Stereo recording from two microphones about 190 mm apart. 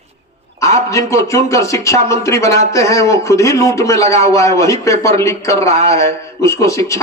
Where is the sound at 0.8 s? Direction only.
15° left (ahead or behind).